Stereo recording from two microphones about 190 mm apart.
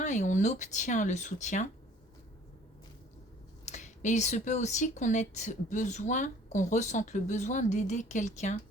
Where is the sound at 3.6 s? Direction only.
40° left (ahead or behind).